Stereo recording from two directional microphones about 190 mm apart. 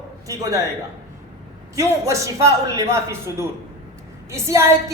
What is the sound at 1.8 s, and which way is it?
A woman's voice, 15° right (ahead or behind).